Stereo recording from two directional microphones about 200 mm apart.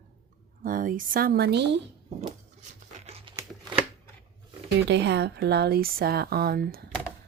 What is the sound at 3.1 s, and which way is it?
Crumpling, 30° right (ahead or behind).